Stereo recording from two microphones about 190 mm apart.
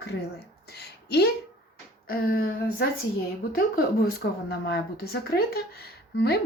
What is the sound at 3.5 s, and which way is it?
Speech, 50° left (ahead or behind).